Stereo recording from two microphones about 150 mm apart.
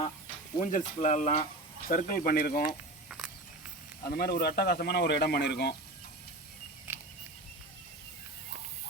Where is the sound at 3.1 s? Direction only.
Centre (ahead or behind).